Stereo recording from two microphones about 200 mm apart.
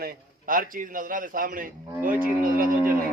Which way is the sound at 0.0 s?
45° right (ahead or behind).